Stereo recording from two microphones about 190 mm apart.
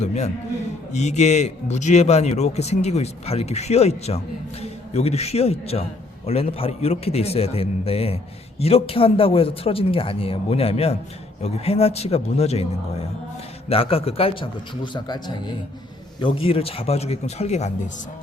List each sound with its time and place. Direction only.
0.0 s a man's voice: 35° left (ahead or behind)